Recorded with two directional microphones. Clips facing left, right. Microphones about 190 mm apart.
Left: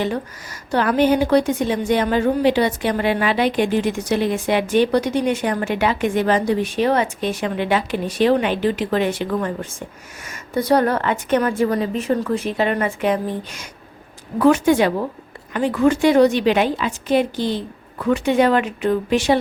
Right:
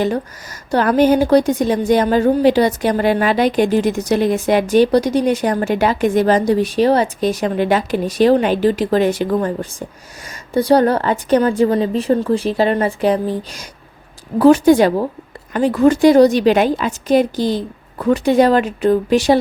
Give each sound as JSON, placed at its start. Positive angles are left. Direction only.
{"t": 0.7, "sound": "a woman's voice", "side_deg": -40}